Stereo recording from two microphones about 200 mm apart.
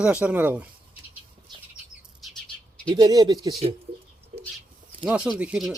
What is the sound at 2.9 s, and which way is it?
Speech, 20° right (ahead or behind).